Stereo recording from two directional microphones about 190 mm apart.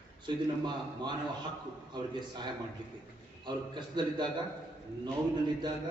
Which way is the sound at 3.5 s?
25° right (ahead or behind).